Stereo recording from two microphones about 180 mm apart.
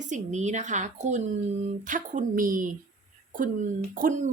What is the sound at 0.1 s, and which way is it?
A woman's voice, 40° right (ahead or behind).